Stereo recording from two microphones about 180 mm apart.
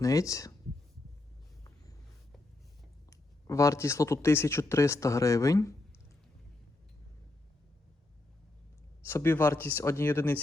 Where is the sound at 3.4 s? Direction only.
15° left (ahead or behind).